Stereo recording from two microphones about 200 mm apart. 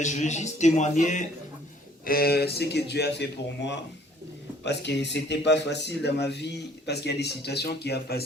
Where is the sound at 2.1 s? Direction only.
50° left (ahead or behind).